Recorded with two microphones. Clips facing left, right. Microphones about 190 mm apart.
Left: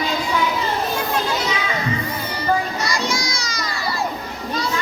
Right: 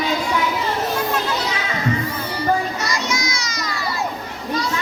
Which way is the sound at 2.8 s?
35° left (ahead or behind).